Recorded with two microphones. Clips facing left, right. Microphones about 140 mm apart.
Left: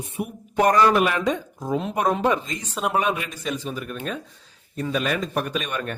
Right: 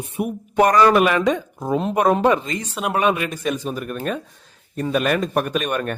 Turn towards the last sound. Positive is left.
turn(degrees=-50)  # may be behind; listen again after turning